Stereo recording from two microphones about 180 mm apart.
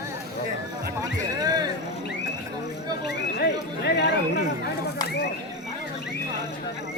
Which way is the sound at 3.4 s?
65° left (ahead or behind).